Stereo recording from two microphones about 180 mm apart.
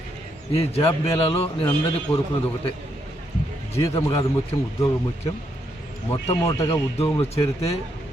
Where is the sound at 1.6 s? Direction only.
15° left (ahead or behind).